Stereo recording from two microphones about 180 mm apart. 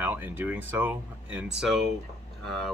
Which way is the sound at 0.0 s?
10° right (ahead or behind).